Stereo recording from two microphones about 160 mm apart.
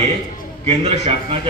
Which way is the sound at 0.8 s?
40° right (ahead or behind).